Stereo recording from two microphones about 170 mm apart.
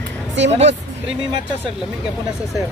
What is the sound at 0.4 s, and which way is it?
Speech, 90° right.